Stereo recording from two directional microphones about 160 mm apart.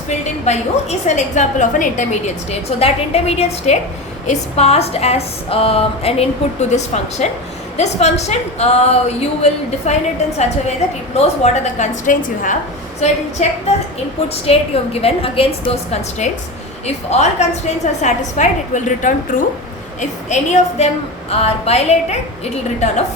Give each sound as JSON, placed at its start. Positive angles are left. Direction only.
{"t": 0.1, "sound": "a woman's voice", "side_deg": 45}
{"t": 11.1, "sound": "a woman's voice", "side_deg": 45}
{"t": 13.0, "sound": "a woman's voice", "side_deg": 45}
{"t": 15.0, "sound": "a woman's voice", "side_deg": 35}